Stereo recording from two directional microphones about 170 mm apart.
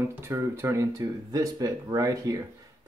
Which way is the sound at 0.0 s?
15° right (ahead or behind).